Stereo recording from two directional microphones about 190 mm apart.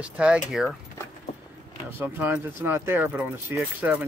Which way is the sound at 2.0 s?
10° right (ahead or behind).